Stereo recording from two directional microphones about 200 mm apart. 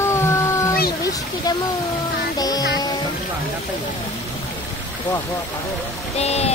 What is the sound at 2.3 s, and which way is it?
Music, 20° left (ahead or behind).